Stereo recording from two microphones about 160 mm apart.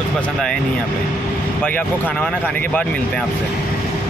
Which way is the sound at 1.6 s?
10° left (ahead or behind).